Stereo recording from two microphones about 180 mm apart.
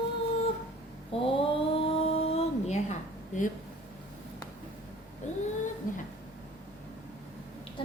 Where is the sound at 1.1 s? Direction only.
30° left (ahead or behind).